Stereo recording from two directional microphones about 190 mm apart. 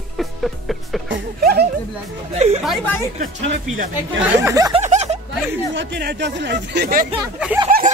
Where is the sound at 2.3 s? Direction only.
35° right (ahead or behind).